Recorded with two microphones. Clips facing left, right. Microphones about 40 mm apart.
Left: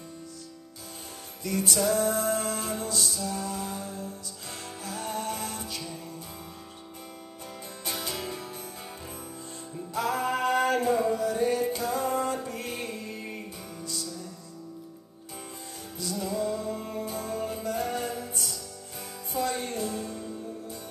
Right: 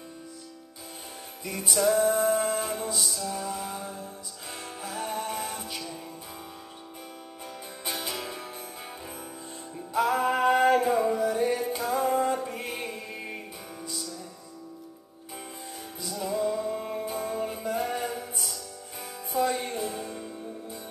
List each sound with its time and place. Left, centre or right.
1.4 s music: centre
7.8 s music: centre
9.9 s music: centre
16.0 s music: centre